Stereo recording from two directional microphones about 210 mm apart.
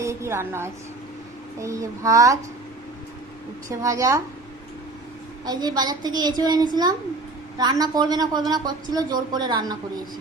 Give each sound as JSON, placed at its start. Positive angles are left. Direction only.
{"t": 0.0, "sound": "a sound", "side_deg": -15}
{"t": 1.5, "sound": "a child's voice", "side_deg": -15}
{"t": 3.7, "sound": "a child's voice", "side_deg": -15}
{"t": 5.5, "sound": "a woman's voice", "side_deg": -20}